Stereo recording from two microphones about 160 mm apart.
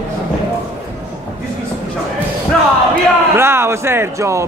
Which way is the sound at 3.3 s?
15° right (ahead or behind).